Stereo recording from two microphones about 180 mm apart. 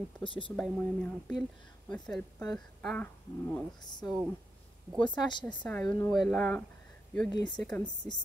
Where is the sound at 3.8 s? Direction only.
25° left (ahead or behind).